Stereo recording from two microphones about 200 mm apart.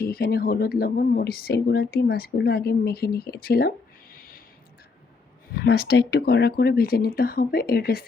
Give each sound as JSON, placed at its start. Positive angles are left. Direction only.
{"t": 0.0, "sound": "speech", "side_deg": 50}
{"t": 4.1, "sound": "a sound", "side_deg": 45}
{"t": 5.6, "sound": "speech", "side_deg": 55}